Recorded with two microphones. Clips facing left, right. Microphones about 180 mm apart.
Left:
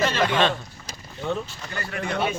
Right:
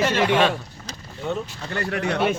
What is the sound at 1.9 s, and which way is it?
Speech, 65° right (ahead or behind).